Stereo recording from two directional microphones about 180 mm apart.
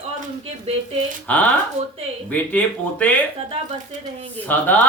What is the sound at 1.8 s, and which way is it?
Speech, 40° right (ahead or behind).